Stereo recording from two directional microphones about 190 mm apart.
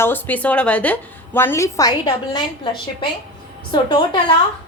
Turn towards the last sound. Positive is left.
turn(degrees=25)  # may be behind; listen again after turning